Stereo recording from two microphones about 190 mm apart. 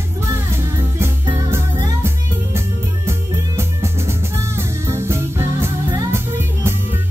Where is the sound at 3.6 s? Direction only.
15° right (ahead or behind).